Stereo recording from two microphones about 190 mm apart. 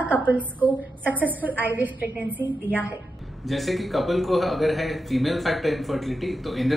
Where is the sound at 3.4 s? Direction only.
Centre (ahead or behind).